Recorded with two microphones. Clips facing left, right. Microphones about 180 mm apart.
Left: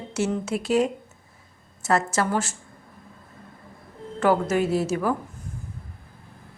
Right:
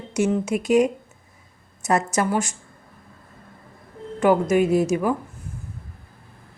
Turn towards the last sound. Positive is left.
turn(degrees=-15)  # may be behind; listen again after turning